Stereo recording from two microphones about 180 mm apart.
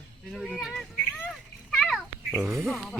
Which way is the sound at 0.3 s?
Centre (ahead or behind).